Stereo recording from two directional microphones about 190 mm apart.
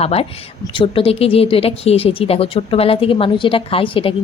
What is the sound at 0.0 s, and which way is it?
Speech, 30° left (ahead or behind).